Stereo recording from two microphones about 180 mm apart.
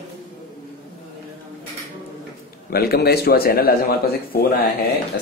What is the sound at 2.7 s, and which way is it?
A man's voice, 60° left (ahead or behind).